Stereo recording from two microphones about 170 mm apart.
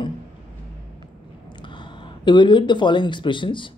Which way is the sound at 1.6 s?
30° left (ahead or behind).